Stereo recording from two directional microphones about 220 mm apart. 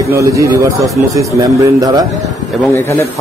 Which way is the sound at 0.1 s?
15° right (ahead or behind).